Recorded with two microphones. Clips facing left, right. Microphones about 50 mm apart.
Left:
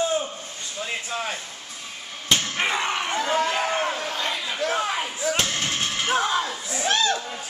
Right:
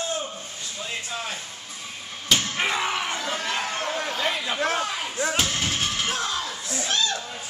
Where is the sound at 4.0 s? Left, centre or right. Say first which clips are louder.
Right 1 dB; centre.